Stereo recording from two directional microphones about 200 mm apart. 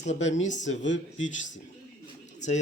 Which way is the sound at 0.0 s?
35° left (ahead or behind).